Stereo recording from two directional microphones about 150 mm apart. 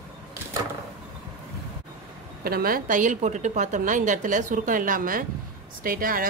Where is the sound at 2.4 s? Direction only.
85° right.